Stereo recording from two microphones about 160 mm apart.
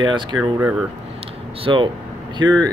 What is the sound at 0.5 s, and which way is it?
Speech, 10° right (ahead or behind).